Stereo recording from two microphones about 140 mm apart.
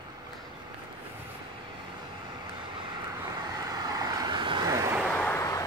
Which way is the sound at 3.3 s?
25° right (ahead or behind).